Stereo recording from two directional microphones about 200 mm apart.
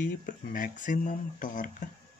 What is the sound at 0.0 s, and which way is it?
Speech, 40° left (ahead or behind).